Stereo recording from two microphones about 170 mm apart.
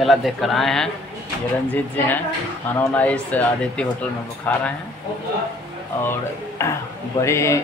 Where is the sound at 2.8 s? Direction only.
10° left (ahead or behind).